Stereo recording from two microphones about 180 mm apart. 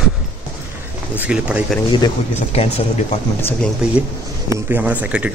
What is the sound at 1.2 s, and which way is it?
Speech, 5° right (ahead or behind).